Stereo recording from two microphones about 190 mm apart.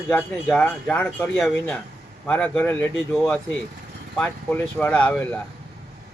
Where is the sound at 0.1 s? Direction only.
5° left (ahead or behind).